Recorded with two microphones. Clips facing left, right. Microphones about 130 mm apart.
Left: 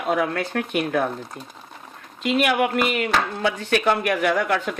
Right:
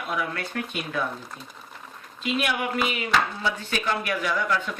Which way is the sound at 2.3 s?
65° left (ahead or behind).